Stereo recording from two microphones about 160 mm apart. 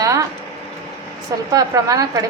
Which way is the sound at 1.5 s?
20° right (ahead or behind).